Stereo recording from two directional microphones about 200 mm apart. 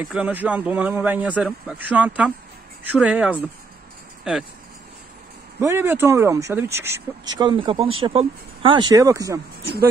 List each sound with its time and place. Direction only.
0.1 s speech: 5° right (ahead or behind)
5.6 s speech: 15° right (ahead or behind)